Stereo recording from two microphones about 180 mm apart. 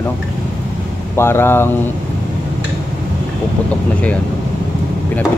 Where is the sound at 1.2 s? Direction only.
15° left (ahead or behind).